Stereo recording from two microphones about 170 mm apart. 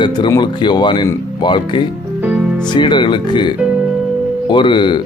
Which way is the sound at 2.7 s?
25° left (ahead or behind).